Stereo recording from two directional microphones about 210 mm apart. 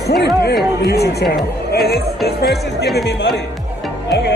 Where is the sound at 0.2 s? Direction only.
50° left (ahead or behind).